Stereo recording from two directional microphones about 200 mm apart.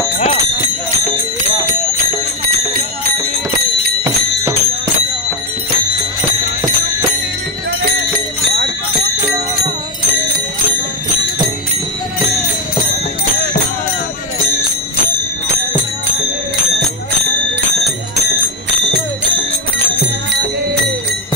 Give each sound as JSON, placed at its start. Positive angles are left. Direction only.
{"t": 0.2, "sound": "jingle bell", "side_deg": 35}
{"t": 4.0, "sound": "music", "side_deg": -15}